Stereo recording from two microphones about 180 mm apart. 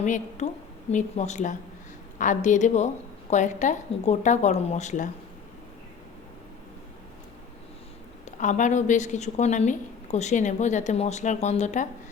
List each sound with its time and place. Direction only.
0.0 s a woman's voice: 40° left (ahead or behind)
8.2 s a woman's voice: 45° left (ahead or behind)